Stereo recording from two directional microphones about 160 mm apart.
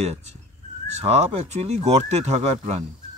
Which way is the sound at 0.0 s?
45° right (ahead or behind).